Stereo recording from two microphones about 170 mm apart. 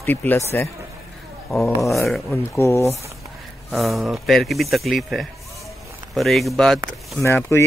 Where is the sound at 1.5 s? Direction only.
Centre (ahead or behind).